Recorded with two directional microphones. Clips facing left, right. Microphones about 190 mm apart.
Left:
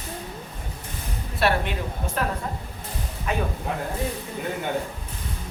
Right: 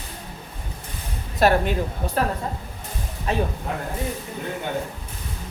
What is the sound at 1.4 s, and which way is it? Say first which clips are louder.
Speech: right 5 dB; 40° right (ahead or behind).